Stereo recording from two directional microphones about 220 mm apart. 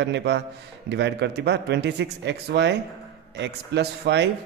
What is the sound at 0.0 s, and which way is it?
A man's voice, 50° right (ahead or behind).